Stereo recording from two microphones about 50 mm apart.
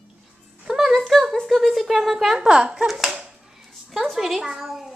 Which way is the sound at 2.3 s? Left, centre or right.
Centre.